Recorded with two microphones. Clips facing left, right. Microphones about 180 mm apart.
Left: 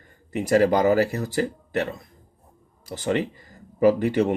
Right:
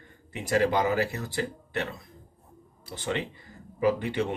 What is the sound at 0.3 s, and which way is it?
Speech, 40° left (ahead or behind).